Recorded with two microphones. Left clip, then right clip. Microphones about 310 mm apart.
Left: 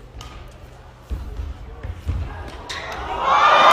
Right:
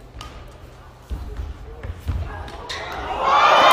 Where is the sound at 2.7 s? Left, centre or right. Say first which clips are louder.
Even; centre.